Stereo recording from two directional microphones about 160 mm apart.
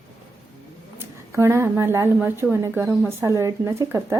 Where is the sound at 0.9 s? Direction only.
15° right (ahead or behind).